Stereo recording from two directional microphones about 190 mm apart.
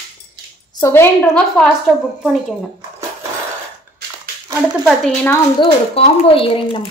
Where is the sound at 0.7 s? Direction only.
15° left (ahead or behind).